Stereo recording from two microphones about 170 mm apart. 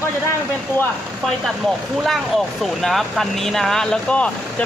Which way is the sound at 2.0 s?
Centre (ahead or behind).